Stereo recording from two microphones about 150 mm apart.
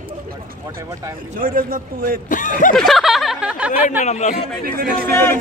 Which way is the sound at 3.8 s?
50° left (ahead or behind).